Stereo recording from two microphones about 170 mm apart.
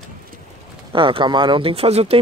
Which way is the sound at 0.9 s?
30° right (ahead or behind).